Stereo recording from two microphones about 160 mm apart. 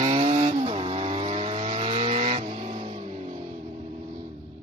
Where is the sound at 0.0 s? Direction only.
40° right (ahead or behind).